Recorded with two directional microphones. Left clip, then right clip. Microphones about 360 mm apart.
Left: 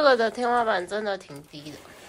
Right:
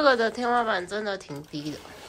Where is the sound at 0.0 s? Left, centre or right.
Centre.